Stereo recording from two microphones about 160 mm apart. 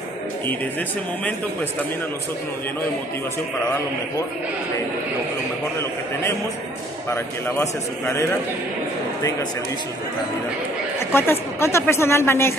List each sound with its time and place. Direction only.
0.5 s a woman's voice: 10° left (ahead or behind)
7.4 s a woman's voice: 15° left (ahead or behind)
11.0 s a woman's voice: 15° left (ahead or behind)